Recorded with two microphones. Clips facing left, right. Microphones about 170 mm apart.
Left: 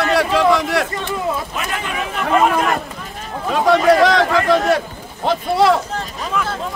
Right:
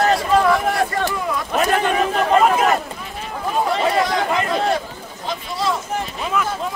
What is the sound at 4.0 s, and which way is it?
Speech, 90° left.